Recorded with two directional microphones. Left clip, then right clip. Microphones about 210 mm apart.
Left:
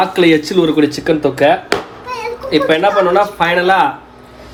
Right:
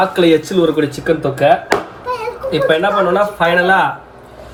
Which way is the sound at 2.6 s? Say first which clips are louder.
Even; 35° left (ahead or behind).